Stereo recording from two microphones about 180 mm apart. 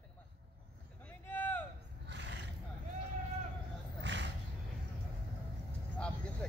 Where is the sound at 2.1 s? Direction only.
80° right.